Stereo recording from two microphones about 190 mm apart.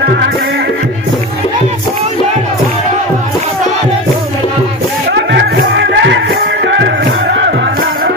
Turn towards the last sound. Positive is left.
turn(degrees=-60)  # may be behind; listen again after turning